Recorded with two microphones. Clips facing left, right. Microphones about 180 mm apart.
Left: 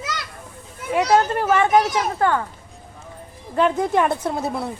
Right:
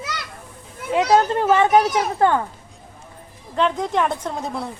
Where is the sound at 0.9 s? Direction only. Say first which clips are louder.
Right 1 dB; 20° right (ahead or behind).